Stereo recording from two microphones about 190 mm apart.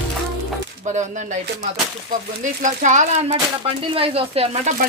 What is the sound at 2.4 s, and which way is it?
Speech, 40° right (ahead or behind).